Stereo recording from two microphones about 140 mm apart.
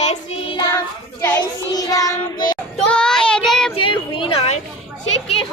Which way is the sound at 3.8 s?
35° left (ahead or behind).